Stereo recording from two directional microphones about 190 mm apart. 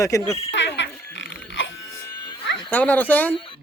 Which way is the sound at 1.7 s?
20° left (ahead or behind).